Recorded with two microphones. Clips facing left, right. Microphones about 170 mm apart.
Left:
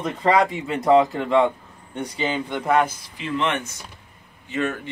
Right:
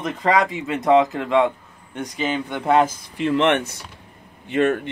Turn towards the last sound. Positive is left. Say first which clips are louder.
# right 6 dB
turn(degrees=-55)  # may be behind; listen again after turning